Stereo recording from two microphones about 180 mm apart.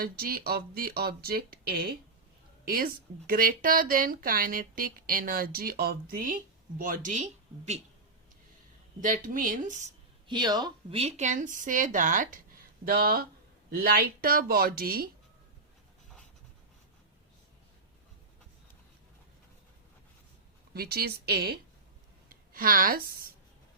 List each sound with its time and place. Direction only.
0.0 s speech: 55° right (ahead or behind); by 7.8 s 40° right (ahead or behind)
9.0 s speech: 45° right (ahead or behind)
10.2 s speech: 25° right (ahead or behind)
10.9 s speech: 40° right (ahead or behind); by 15.1 s 55° right (ahead or behind)
20.7 s a woman's voice: 60° right (ahead or behind)